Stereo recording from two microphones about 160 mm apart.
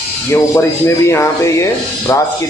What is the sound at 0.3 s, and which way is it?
Speech, 15° left (ahead or behind).